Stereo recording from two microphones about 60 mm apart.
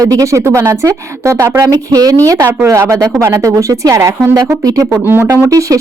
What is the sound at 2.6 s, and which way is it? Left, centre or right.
Speech, right.